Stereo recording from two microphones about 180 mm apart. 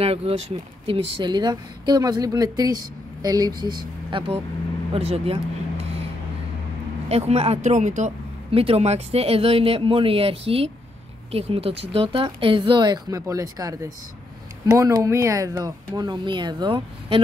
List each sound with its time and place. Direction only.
0.0 s a woman's voice: 35° right (ahead or behind)
7.1 s a woman's voice: 35° right (ahead or behind)